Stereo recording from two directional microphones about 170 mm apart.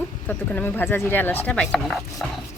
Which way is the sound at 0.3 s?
10° left (ahead or behind).